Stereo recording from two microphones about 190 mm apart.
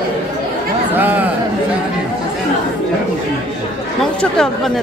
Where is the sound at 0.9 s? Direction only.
10° right (ahead or behind).